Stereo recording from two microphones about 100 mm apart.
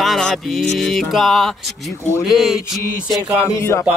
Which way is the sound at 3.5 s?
30° left (ahead or behind).